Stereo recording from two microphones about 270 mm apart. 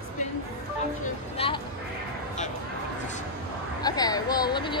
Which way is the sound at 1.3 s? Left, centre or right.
Left.